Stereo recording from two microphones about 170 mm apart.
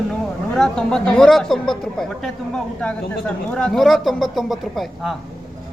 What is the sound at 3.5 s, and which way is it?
Speech, 5° left (ahead or behind).